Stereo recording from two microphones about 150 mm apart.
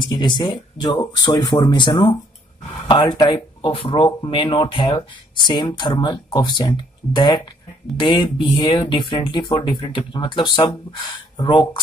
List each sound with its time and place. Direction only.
0.0 s speech: 25° left (ahead or behind)